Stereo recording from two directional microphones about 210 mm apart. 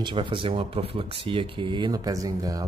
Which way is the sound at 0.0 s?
25° right (ahead or behind).